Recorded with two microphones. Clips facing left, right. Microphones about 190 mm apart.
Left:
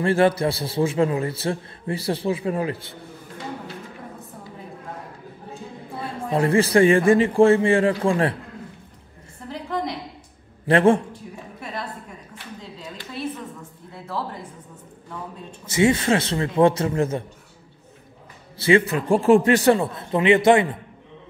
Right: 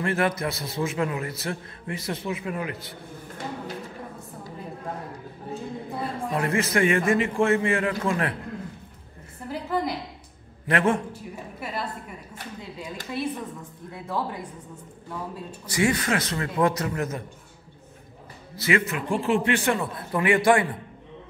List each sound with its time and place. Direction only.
0.0 s a man's voice: 30° left (ahead or behind)
6.3 s a man's voice: 30° left (ahead or behind)
9.5 s a sound: 5° right (ahead or behind)
10.7 s a man's voice: 30° left (ahead or behind)
12.4 s a sound: 40° right (ahead or behind)
15.6 s a man's voice: 25° left (ahead or behind)
18.6 s a man's voice: 30° left (ahead or behind)